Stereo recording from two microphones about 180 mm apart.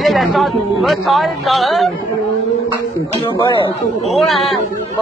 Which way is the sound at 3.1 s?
30° left (ahead or behind).